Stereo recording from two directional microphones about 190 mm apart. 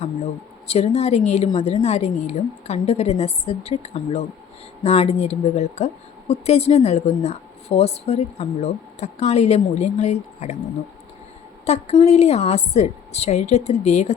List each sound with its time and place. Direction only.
0.7 s a woman's voice: 35° left (ahead or behind)
11.6 s a woman's voice: 35° left (ahead or behind)